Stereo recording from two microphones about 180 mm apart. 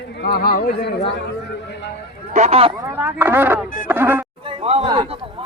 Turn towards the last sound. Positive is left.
turn(degrees=-35)  # may be behind; listen again after turning